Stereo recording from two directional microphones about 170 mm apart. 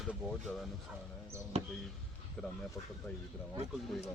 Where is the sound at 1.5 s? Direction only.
40° right (ahead or behind).